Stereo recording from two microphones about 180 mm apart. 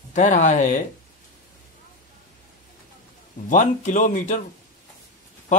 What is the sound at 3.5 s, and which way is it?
Speech, 45° left (ahead or behind).